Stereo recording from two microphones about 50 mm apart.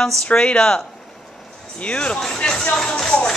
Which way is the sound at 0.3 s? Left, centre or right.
Left.